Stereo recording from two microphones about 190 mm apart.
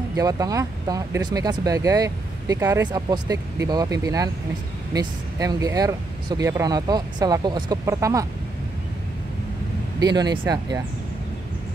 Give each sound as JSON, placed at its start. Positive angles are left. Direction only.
{"t": 0.1, "sound": "speech", "side_deg": -20}
{"t": 9.9, "sound": "speech", "side_deg": -20}